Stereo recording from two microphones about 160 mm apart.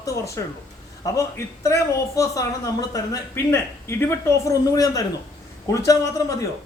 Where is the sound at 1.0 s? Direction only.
20° left (ahead or behind).